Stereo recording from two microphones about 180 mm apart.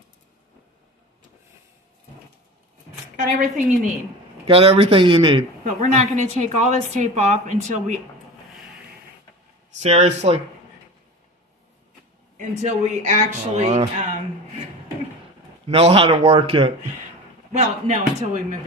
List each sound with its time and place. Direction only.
3.2 s a woman's voice: 50° right (ahead or behind)
4.5 s a woman's voice: 30° right (ahead or behind)
5.6 s a woman's voice: 40° right (ahead or behind)
9.8 s a woman's voice: 35° right (ahead or behind)
12.4 s a woman's voice: 40° right (ahead or behind)
15.7 s a woman's voice: 30° right (ahead or behind)